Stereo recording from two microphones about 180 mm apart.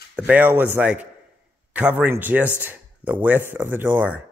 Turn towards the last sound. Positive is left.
turn(degrees=-10)  # may be behind; listen again after turning